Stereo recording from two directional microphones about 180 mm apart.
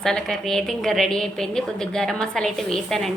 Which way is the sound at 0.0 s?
5° left (ahead or behind).